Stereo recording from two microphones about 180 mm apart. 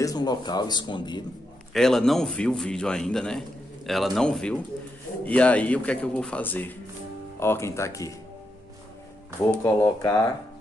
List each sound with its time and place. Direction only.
0.0 s speech: 20° left (ahead or behind)
1.7 s a man's voice: centre (ahead or behind); by 8.1 s 15° left (ahead or behind)
9.4 s speech: 15° left (ahead or behind)